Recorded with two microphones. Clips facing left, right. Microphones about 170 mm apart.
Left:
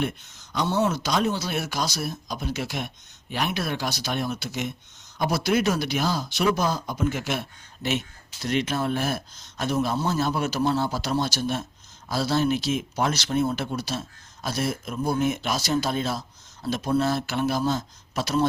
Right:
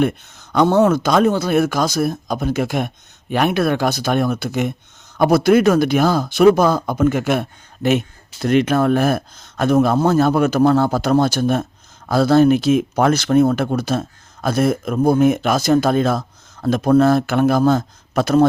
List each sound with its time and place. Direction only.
0.0 s speech: 55° right (ahead or behind)